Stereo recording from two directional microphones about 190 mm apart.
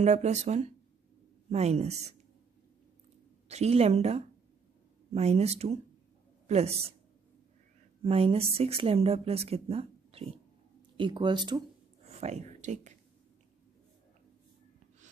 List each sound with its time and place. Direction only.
0.0 s speech: 35° right (ahead or behind)
3.4 s a woman's voice: 35° right (ahead or behind)
8.0 s speech: 30° right (ahead or behind)